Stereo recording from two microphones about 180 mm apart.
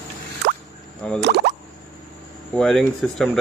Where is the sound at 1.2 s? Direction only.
70° right (ahead or behind).